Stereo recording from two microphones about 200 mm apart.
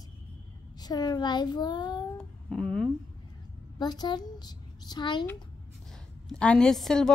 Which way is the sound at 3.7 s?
20° left (ahead or behind).